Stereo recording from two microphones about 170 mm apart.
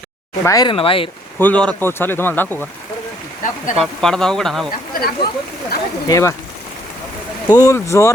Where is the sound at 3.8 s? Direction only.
Centre (ahead or behind).